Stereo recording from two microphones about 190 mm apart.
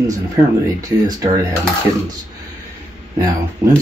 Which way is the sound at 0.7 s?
20° right (ahead or behind).